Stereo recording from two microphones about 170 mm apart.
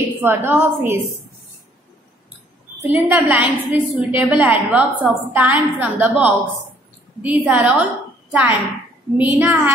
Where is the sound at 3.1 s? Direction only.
10° right (ahead or behind).